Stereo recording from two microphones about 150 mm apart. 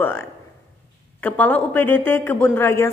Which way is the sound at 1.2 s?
10° left (ahead or behind).